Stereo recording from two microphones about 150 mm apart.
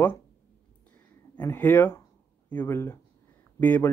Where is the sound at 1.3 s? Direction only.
15° left (ahead or behind).